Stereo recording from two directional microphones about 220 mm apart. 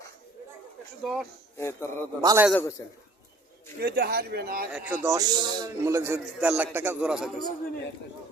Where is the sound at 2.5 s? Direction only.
10° left (ahead or behind).